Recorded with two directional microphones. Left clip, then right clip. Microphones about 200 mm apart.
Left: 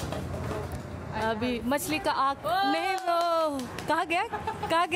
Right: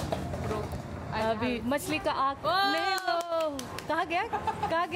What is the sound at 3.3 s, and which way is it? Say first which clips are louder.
Speech: left 3 dB; 25° left (ahead or behind).